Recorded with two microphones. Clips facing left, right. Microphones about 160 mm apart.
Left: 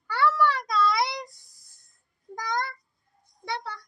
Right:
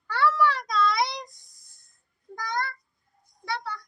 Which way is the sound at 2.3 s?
15° left (ahead or behind).